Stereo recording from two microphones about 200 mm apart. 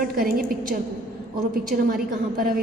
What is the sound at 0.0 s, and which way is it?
A woman's voice, 45° right (ahead or behind).